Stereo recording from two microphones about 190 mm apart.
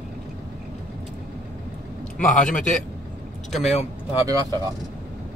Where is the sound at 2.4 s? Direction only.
40° left (ahead or behind).